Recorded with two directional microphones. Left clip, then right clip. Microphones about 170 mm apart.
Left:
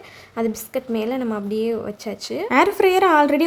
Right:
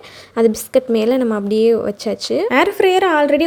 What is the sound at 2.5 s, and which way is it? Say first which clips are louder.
Speech: right 1 dB; 5° right (ahead or behind).